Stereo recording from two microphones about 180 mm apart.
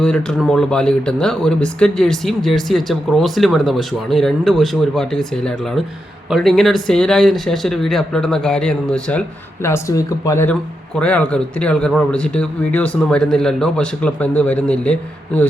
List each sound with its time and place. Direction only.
0.0 s speech: 5° left (ahead or behind)
9.6 s speech: 15° left (ahead or behind)